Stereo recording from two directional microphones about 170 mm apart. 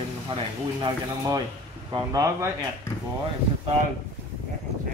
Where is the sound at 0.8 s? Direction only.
20° right (ahead or behind).